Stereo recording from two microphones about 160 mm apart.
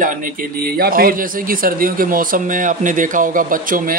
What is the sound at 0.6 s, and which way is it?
Speech, 70° right (ahead or behind).